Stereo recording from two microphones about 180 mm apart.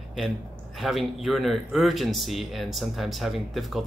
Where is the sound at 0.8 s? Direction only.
Centre (ahead or behind).